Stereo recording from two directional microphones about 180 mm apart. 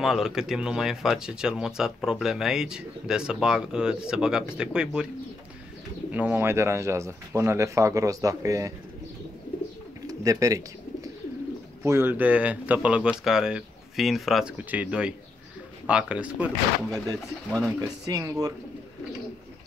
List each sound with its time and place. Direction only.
0.0 s speech: centre (ahead or behind)
6.1 s speech: 10° right (ahead or behind)
10.0 s speech: 20° right (ahead or behind)
11.8 s speech: 15° right (ahead or behind)
17.5 s speech: 5° left (ahead or behind)
17.7 s speech: 20° right (ahead or behind)